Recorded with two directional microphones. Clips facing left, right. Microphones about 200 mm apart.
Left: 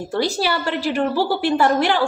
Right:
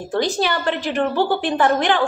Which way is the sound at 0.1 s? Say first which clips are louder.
Right 1 dB; 10° left (ahead or behind).